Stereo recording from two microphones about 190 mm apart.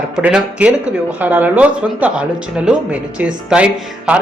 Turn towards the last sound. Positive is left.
turn(degrees=-5)  # may be behind; listen again after turning